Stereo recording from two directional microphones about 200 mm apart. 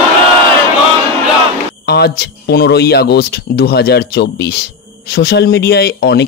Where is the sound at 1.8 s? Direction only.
55° left (ahead or behind).